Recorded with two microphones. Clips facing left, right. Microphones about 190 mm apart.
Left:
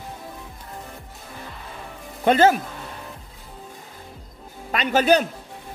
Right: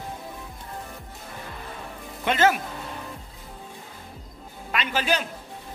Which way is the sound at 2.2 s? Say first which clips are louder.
Left 5 dB; 35° left (ahead or behind).